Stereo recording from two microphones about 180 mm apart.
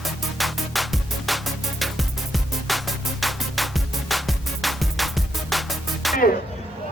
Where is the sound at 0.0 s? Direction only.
Centre (ahead or behind).